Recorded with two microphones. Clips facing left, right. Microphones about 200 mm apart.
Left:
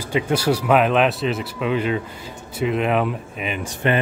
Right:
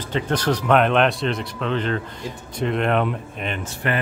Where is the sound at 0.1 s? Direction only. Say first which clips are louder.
Left 2 dB; 10° left (ahead or behind).